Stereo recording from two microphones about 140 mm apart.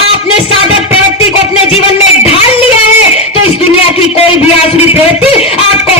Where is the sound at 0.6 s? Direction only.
45° left (ahead or behind).